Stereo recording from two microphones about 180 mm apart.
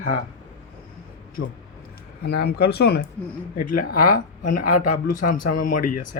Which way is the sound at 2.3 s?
65° left (ahead or behind).